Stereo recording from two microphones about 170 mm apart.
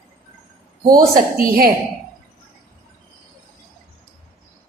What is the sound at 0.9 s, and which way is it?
Speech, 55° right (ahead or behind).